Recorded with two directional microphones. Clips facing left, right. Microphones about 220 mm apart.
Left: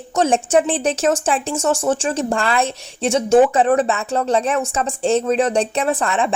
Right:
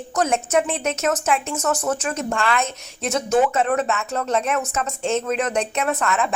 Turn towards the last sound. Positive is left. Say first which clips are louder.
# left 3 dB
turn(degrees=30)  # may be behind; listen again after turning